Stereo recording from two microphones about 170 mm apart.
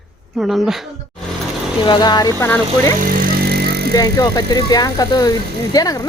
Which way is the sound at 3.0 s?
60° right (ahead or behind).